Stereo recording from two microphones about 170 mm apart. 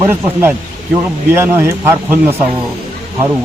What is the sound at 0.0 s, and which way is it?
Speech, 15° right (ahead or behind).